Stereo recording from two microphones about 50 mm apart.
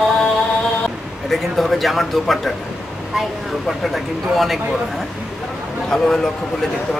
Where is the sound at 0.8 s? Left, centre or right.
Centre.